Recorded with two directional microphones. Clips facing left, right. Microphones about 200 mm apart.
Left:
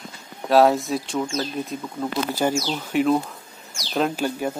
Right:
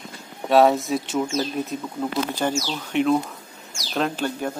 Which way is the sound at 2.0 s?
5° left (ahead or behind).